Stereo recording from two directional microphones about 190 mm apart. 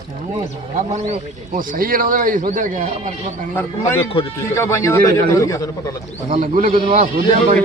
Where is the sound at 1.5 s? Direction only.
45° right (ahead or behind).